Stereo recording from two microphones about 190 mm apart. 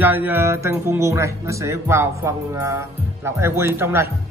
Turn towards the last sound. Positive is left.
turn(degrees=-15)  # may be behind; listen again after turning